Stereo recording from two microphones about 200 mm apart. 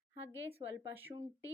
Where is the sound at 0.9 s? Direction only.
10° right (ahead or behind).